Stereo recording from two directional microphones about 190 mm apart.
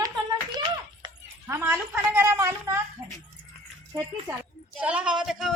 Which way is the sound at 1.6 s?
10° right (ahead or behind).